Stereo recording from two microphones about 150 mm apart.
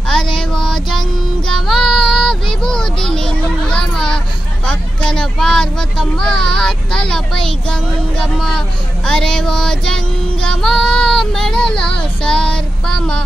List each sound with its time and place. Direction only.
0.4 s child singing: 5° left (ahead or behind)
4.6 s speech: 5° left (ahead or behind)
12.0 s child singing: 5° left (ahead or behind)